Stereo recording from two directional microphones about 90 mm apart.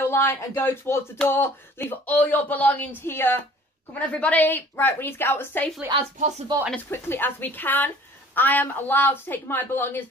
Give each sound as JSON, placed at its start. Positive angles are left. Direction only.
{"t": 0.0, "sound": "speech", "side_deg": 25}
{"t": 6.9, "sound": "speech", "side_deg": 25}